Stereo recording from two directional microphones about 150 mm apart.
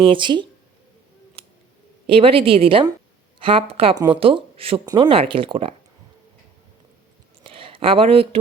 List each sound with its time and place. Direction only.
0.0 s a woman's voice: 35° right (ahead or behind)
2.0 s a woman's voice: 35° right (ahead or behind)
7.4 s a sound: 35° right (ahead or behind)